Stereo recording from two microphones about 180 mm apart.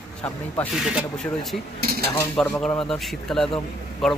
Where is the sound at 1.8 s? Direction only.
55° right (ahead or behind).